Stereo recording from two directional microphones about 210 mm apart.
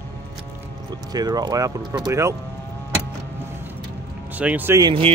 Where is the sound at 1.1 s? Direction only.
20° right (ahead or behind).